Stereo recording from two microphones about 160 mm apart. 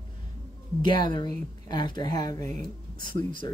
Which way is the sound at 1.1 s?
25° left (ahead or behind).